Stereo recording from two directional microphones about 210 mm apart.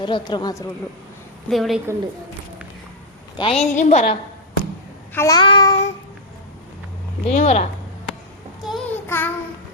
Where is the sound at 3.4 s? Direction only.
30° left (ahead or behind).